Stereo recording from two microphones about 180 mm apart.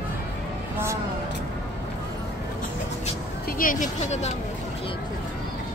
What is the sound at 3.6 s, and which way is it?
Speech, 50° left (ahead or behind).